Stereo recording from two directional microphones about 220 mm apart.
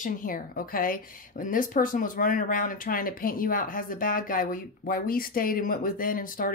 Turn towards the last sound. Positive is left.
turn(degrees=40)  # may be behind; listen again after turning